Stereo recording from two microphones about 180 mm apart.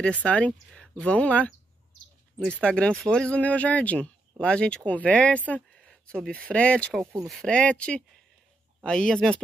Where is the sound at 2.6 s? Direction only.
5° left (ahead or behind).